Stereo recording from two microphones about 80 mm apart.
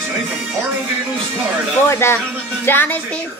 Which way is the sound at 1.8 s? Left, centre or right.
Left.